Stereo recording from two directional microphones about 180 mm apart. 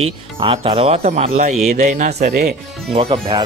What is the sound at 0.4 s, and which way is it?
Speech, 30° right (ahead or behind).